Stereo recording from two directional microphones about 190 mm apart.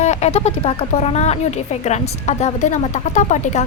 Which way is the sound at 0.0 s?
35° left (ahead or behind).